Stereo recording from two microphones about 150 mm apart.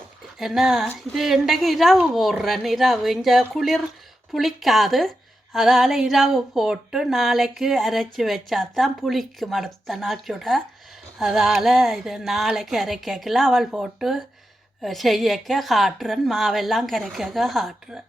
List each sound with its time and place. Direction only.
0.3 s speech: centre (ahead or behind)